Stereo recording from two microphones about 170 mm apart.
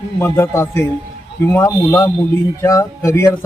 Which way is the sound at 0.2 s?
15° left (ahead or behind).